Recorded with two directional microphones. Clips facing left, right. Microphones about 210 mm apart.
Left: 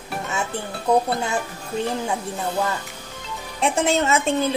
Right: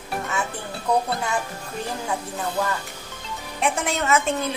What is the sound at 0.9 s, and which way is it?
Speech, 25° left (ahead or behind).